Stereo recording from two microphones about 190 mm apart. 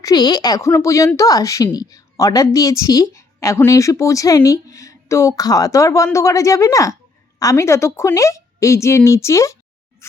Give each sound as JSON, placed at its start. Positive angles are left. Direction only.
{"t": 0.0, "sound": "a woman's voice", "side_deg": 20}
{"t": 10.0, "sound": "music", "side_deg": 15}